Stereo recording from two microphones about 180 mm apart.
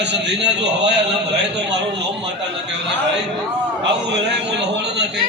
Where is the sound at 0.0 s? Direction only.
75° right (ahead or behind).